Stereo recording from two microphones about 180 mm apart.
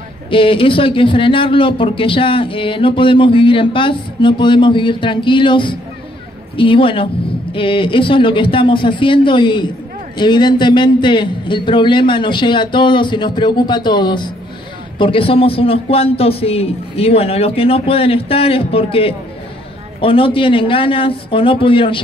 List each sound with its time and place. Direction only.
0.3 s speech: 30° left (ahead or behind)